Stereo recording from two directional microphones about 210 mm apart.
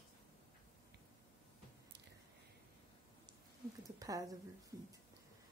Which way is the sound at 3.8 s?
15° right (ahead or behind).